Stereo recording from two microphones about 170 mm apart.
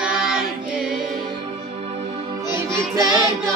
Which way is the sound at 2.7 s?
20° right (ahead or behind).